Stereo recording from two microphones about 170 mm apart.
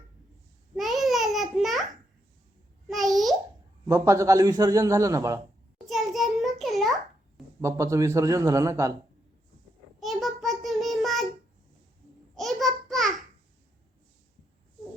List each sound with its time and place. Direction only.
0.8 s babbling: centre (ahead or behind)
2.8 s babbling: centre (ahead or behind)
3.8 s a man's voice: 15° right (ahead or behind)
5.8 s a sound: centre (ahead or behind)
7.6 s a man's voice: 15° right (ahead or behind)
10.0 s child singing: centre (ahead or behind)
12.4 s babbling: centre (ahead or behind)